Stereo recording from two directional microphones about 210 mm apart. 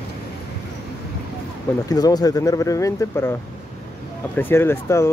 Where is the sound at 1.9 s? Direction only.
20° left (ahead or behind).